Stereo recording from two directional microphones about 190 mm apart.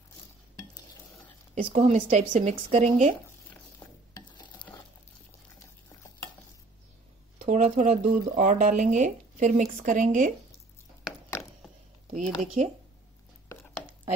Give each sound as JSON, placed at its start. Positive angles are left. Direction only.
{"t": 1.5, "sound": "speech", "side_deg": -35}
{"t": 4.3, "sound": "stir", "side_deg": 25}
{"t": 7.3, "sound": "speech", "side_deg": -40}
{"t": 12.1, "sound": "speech", "side_deg": -40}
{"t": 13.5, "sound": "a sound", "side_deg": 15}